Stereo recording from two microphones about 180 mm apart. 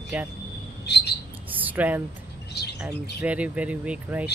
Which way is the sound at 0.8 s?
70° left (ahead or behind).